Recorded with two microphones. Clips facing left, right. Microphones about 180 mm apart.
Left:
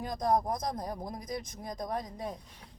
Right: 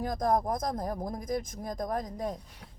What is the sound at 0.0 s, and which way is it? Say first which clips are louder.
Speech: right 1 dB; 50° right (ahead or behind).